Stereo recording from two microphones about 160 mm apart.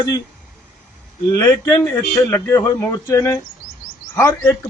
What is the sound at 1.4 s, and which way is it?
A man's voice, 15° left (ahead or behind).